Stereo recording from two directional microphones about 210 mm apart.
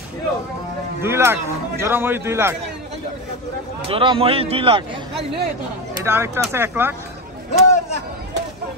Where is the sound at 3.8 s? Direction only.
25° right (ahead or behind).